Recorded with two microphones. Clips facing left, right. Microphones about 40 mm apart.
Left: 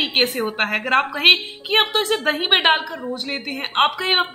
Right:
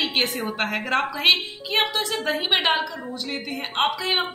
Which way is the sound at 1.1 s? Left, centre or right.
Left.